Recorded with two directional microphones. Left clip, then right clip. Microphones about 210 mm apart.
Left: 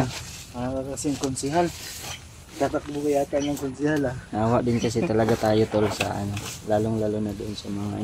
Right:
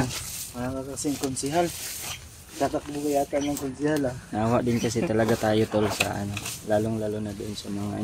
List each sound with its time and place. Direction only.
0.6 s speech: 20° right (ahead or behind)
2.6 s speech: 5° right (ahead or behind)